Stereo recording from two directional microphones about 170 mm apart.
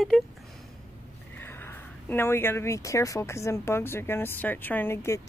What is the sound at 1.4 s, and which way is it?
Speech, 10° left (ahead or behind).